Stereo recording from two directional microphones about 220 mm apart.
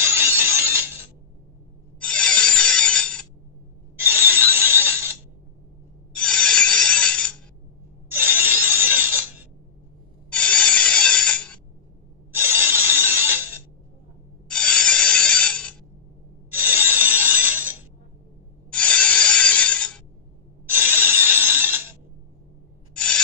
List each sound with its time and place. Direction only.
0.0 s music: 10° right (ahead or behind)
2.0 s rub: 5° left (ahead or behind)
3.9 s a sound: 10° right (ahead or behind)
6.1 s a sound: 5° left (ahead or behind)
8.1 s a sound: 10° right (ahead or behind)
10.3 s rub: 5° left (ahead or behind)
12.4 s mechanisms: 10° right (ahead or behind)
14.5 s mechanisms: 5° left (ahead or behind)
16.4 s rub: 10° right (ahead or behind)
18.7 s rub: 5° left (ahead or behind)
20.7 s mechanisms: 10° right (ahead or behind)
22.9 s a sound: 5° left (ahead or behind)